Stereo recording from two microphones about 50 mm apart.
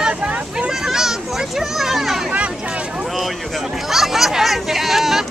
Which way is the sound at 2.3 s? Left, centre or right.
Right.